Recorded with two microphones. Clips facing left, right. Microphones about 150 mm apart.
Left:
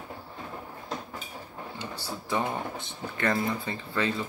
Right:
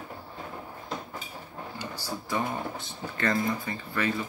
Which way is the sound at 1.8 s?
25° left (ahead or behind).